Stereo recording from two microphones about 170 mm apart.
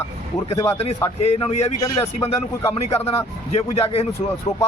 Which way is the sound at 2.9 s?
35° left (ahead or behind).